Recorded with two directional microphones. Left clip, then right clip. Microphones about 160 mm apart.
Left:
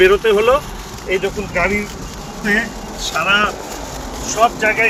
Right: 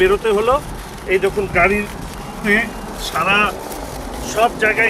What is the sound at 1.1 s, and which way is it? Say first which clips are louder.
Speech: right 2 dB; 30° right (ahead or behind).